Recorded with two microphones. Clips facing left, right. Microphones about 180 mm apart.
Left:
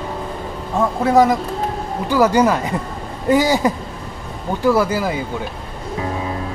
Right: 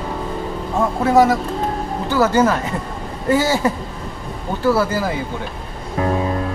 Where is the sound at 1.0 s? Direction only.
20° left (ahead or behind).